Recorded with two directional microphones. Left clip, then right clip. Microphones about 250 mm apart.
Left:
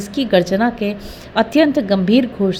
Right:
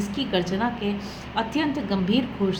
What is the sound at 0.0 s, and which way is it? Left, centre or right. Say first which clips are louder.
A woman's voice: left 10 dB; left.